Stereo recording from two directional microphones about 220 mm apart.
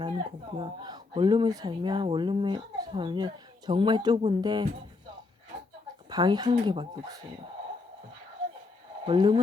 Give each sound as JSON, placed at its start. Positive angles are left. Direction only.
{"t": 0.0, "sound": "speech", "side_deg": -20}
{"t": 6.1, "sound": "speech", "side_deg": -20}
{"t": 9.0, "sound": "speech", "side_deg": -20}